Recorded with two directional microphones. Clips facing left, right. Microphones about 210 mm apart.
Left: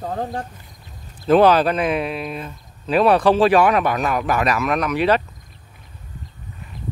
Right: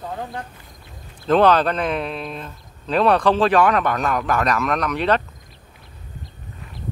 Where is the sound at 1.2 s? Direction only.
10° left (ahead or behind).